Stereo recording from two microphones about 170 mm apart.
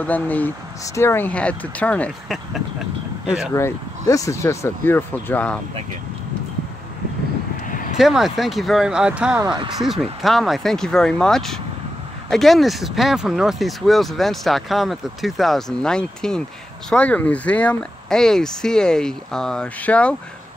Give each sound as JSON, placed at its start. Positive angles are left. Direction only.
{"t": 0.0, "sound": "speech", "side_deg": 10}
{"t": 3.5, "sound": "speech", "side_deg": 20}
{"t": 7.6, "sound": "vehicle", "side_deg": 50}
{"t": 8.0, "sound": "speech", "side_deg": 0}